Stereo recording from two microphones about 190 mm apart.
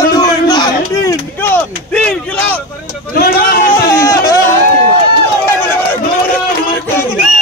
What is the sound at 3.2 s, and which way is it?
Speech, 50° left (ahead or behind).